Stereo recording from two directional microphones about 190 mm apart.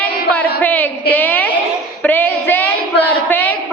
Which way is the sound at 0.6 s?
10° left (ahead or behind).